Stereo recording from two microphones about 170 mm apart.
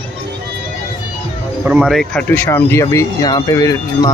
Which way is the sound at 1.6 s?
5° right (ahead or behind).